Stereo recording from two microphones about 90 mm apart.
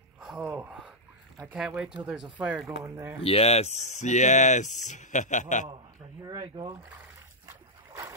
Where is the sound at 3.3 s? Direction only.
90° left.